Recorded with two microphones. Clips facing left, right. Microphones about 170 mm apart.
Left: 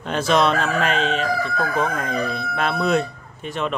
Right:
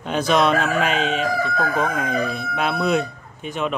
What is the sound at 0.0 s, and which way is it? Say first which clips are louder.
Crowing: even; 5° right (ahead or behind).